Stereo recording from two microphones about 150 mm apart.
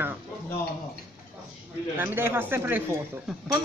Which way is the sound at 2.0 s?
15° right (ahead or behind).